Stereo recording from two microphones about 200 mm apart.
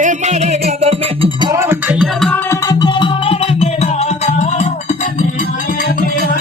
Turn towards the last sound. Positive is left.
turn(degrees=35)  # may be behind; listen again after turning